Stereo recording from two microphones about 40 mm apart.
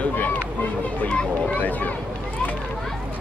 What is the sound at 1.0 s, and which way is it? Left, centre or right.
Speech, left.